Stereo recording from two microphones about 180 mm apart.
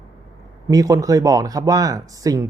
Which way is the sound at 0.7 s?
20° right (ahead or behind).